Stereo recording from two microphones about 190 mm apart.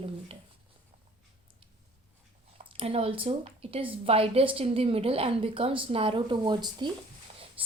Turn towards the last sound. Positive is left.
turn(degrees=-25)  # may be behind; listen again after turning